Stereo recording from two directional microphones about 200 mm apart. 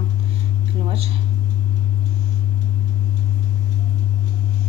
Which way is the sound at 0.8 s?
30° right (ahead or behind).